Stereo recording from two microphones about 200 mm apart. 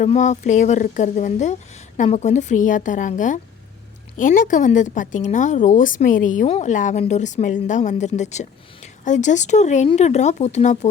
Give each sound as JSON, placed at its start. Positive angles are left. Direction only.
{"t": 0.0, "sound": "speech", "side_deg": 35}